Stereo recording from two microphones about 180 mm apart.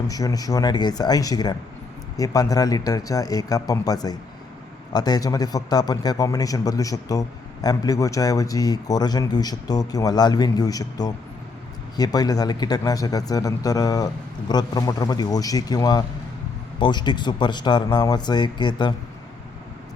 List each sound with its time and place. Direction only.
0.1 s a man's voice: 20° left (ahead or behind)